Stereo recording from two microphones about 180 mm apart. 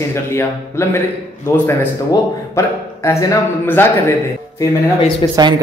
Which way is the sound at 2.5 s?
15° left (ahead or behind).